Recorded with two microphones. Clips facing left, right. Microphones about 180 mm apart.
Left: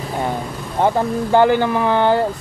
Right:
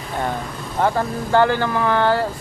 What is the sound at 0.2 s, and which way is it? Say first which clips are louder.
Speech: left 1 dB; 15° left (ahead or behind).